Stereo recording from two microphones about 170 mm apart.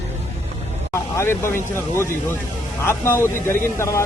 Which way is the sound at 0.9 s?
15° left (ahead or behind).